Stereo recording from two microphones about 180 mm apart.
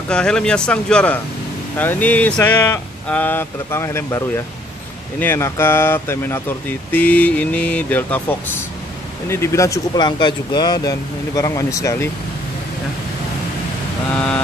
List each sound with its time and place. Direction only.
0.1 s speech: 5° left (ahead or behind)
5.2 s speech: 10° left (ahead or behind)